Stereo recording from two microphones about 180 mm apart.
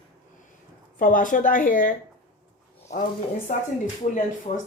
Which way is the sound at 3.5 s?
50° left (ahead or behind).